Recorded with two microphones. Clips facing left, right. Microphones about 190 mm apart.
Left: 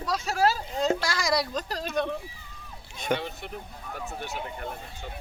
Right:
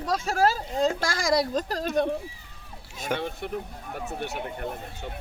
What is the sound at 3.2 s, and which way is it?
Speech, 55° right (ahead or behind).